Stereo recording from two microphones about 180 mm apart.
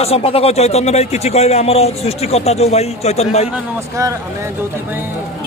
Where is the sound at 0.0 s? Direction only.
35° left (ahead or behind).